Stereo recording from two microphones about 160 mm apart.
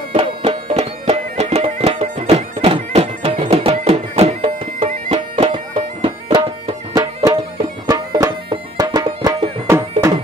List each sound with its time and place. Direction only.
0.1 s music: 35° right (ahead or behind); by 10.1 s 20° right (ahead or behind)